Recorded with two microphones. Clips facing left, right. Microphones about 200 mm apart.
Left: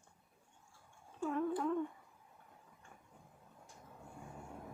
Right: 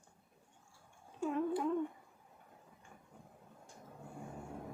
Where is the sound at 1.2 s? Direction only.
15° right (ahead or behind).